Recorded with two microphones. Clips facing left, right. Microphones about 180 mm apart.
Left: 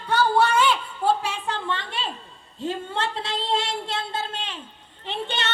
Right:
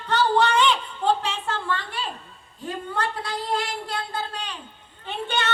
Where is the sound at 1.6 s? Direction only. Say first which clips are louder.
Even; 20° left (ahead or behind).